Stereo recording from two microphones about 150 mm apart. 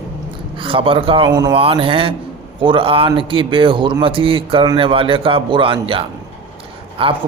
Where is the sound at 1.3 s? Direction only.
25° right (ahead or behind).